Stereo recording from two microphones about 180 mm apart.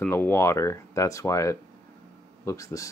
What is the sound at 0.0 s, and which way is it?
Speech, 10° left (ahead or behind).